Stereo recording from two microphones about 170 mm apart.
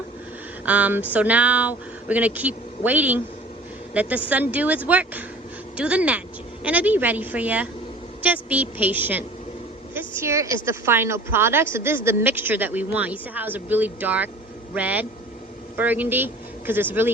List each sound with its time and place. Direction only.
0.6 s speech: 10° right (ahead or behind)